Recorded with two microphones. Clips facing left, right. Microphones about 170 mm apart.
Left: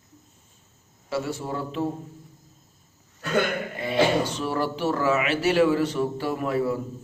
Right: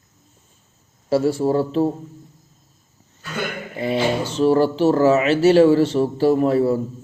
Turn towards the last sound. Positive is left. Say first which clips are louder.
# right 8 dB
turn(degrees=-30)  # may be behind; listen again after turning